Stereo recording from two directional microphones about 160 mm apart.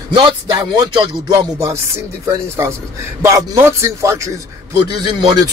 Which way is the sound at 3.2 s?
20° right (ahead or behind).